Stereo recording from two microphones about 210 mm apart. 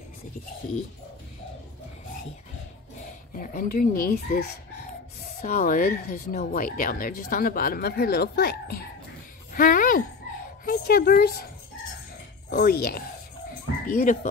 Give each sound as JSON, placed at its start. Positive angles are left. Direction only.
{"t": 3.3, "sound": "speech", "side_deg": 45}
{"t": 12.4, "sound": "speech", "side_deg": 50}